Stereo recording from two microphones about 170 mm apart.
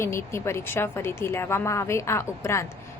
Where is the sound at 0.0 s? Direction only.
15° left (ahead or behind).